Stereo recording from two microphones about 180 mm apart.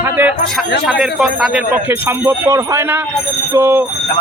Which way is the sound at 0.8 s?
Centre (ahead or behind).